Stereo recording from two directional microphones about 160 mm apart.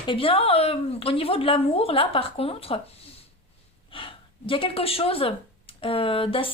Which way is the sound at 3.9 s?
35° left (ahead or behind).